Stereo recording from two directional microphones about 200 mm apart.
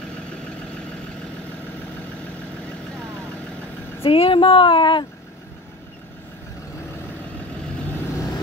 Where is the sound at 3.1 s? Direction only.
5° left (ahead or behind).